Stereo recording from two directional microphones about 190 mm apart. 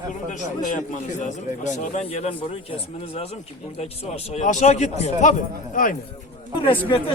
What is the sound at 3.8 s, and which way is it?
A man's voice, 35° left (ahead or behind).